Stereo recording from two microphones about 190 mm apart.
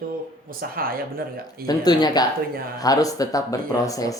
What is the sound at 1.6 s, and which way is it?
Speech, 20° left (ahead or behind).